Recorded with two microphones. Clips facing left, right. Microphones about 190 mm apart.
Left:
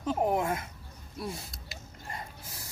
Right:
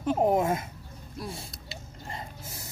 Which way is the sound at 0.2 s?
20° right (ahead or behind).